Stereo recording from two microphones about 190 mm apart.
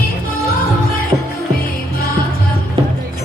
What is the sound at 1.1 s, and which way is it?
Music, 20° right (ahead or behind).